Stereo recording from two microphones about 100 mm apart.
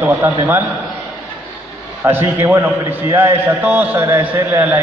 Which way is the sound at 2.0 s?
25° right (ahead or behind).